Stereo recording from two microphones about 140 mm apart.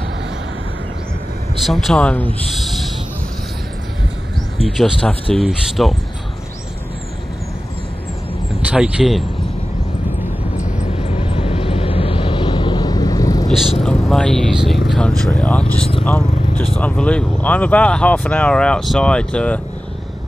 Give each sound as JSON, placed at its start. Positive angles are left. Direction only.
{"t": 1.6, "sound": "speech", "side_deg": 0}
{"t": 2.5, "sound": "owl", "side_deg": 0}
{"t": 4.6, "sound": "speech", "side_deg": 0}
{"t": 8.6, "sound": "speech", "side_deg": -10}
{"t": 10.8, "sound": "vehicle", "side_deg": 50}
{"t": 13.5, "sound": "speech", "side_deg": 0}